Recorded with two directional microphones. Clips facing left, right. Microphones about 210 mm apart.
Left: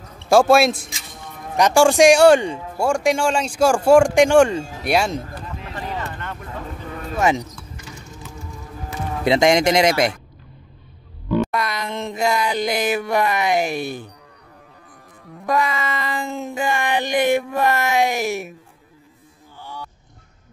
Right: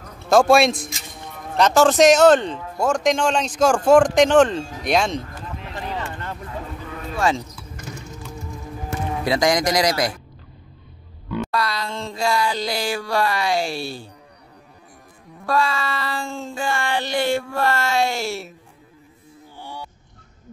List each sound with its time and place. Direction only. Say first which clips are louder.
0.3 s speech: left 1 dB; 5° left (ahead or behind)
7.2 s speech: left 2 dB; 20° left (ahead or behind)
9.2 s speech: left 4 dB; 25° left (ahead or behind)
11.5 s speech: even; 20° left (ahead or behind)
15.4 s speech: left 1 dB; 20° left (ahead or behind)